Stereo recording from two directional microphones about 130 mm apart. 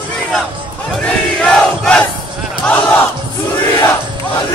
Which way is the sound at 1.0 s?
5° left (ahead or behind).